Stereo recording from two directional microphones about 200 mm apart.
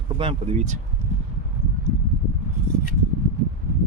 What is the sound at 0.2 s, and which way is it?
Speech, 30° right (ahead or behind).